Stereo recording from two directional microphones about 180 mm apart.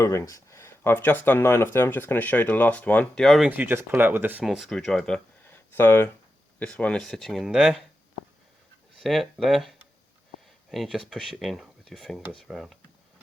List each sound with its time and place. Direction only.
0.0 s speech: 15° left (ahead or behind); by 3.5 s centre (ahead or behind)
3.5 s speech: 10° right (ahead or behind)
4.4 s speech: centre (ahead or behind)
9.0 s speech: centre (ahead or behind)